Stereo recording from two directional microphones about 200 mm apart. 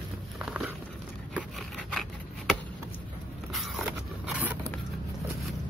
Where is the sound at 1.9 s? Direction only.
Centre (ahead or behind).